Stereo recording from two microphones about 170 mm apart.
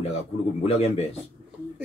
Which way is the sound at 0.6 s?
35° left (ahead or behind).